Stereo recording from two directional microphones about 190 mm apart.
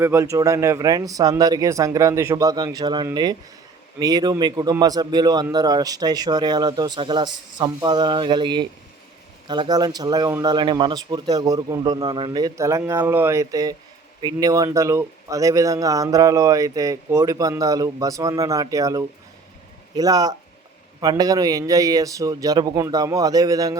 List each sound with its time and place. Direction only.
0.0 s a man's voice: 15° right (ahead or behind)